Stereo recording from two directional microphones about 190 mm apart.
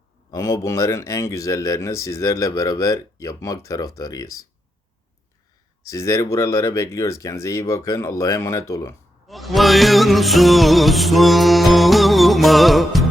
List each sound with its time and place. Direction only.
0.3 s speech: 15° left (ahead or behind)
5.9 s speech: 15° left (ahead or behind)
9.2 s music: centre (ahead or behind)